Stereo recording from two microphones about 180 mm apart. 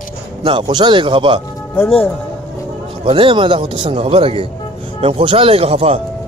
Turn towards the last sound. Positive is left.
turn(degrees=-35)  # may be behind; listen again after turning